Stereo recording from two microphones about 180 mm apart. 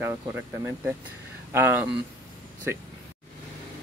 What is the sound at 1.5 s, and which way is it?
Speech, 10° right (ahead or behind).